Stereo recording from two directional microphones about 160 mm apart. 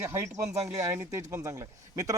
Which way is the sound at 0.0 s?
15° right (ahead or behind).